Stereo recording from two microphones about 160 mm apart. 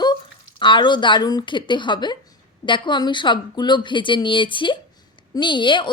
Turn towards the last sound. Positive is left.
turn(degrees=30)  # may be behind; listen again after turning